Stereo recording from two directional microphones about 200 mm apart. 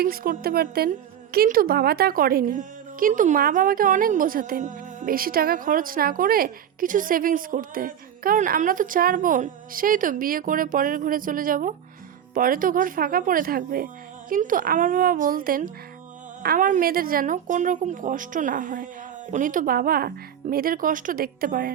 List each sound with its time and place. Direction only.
0.0 s a woman's voice: 45° right (ahead or behind)